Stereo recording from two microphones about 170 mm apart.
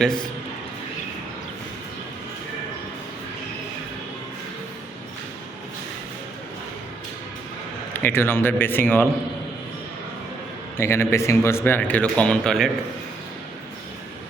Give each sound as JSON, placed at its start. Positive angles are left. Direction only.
{"t": 7.9, "sound": "speech", "side_deg": 15}
{"t": 10.8, "sound": "speech", "side_deg": 15}